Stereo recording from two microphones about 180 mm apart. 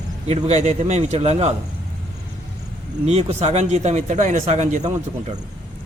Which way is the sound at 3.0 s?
35° right (ahead or behind).